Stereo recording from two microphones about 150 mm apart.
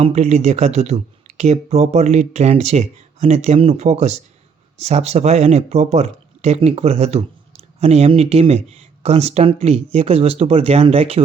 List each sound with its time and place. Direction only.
0.0 s speech: 45° right (ahead or behind)